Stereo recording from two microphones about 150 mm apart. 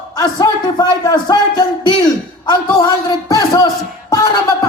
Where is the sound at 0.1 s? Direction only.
25° left (ahead or behind).